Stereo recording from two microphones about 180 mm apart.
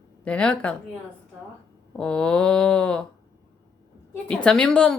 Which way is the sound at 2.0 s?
5° left (ahead or behind).